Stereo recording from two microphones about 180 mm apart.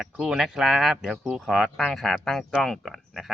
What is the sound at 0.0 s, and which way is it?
Speech, 5° right (ahead or behind).